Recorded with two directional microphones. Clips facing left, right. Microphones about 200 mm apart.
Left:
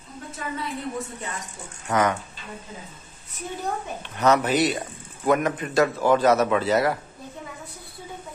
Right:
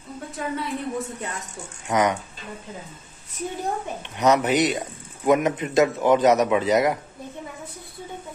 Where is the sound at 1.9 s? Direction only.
15° right (ahead or behind).